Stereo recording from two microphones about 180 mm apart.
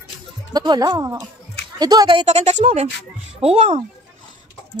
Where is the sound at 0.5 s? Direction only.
20° right (ahead or behind).